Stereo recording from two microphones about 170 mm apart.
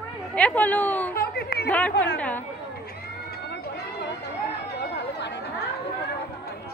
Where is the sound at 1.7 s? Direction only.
10° left (ahead or behind).